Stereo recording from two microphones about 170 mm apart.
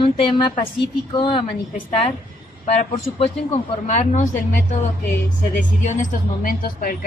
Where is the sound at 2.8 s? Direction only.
35° left (ahead or behind).